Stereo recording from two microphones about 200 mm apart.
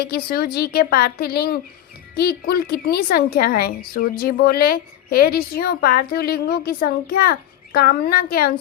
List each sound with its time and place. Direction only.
0.0 s a woman's voice: 50° left (ahead or behind)